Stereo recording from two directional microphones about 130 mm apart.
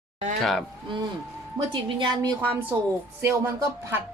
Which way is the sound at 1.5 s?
30° right (ahead or behind).